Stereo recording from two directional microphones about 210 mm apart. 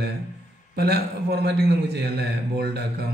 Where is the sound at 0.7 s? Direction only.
50° right (ahead or behind).